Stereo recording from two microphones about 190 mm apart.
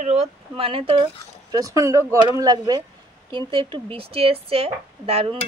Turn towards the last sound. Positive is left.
turn(degrees=-30)  # may be behind; listen again after turning